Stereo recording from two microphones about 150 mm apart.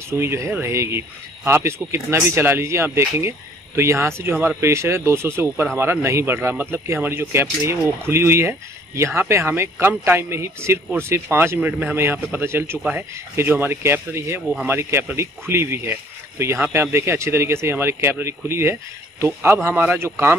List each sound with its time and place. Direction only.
0.1 s speech: 20° right (ahead or behind)